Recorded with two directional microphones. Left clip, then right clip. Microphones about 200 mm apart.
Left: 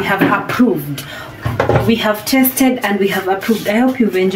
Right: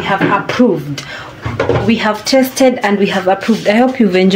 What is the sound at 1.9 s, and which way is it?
Speech, 30° right (ahead or behind).